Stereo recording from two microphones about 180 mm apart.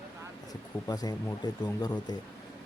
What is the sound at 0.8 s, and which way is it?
Speech, 20° left (ahead or behind).